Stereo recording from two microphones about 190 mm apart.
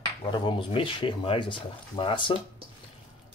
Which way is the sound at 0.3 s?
25° left (ahead or behind).